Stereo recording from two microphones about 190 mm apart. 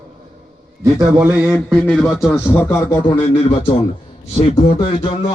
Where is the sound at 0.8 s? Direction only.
15° right (ahead or behind).